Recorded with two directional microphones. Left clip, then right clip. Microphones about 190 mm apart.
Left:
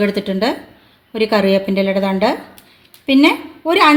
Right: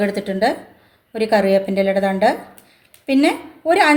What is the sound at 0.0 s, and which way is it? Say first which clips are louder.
A woman's voice: left 1 dB; 45° left (ahead or behind).